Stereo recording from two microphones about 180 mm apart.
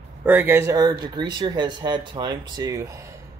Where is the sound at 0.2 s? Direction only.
10° right (ahead or behind).